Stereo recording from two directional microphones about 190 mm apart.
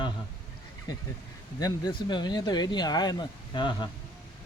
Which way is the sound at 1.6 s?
20° left (ahead or behind).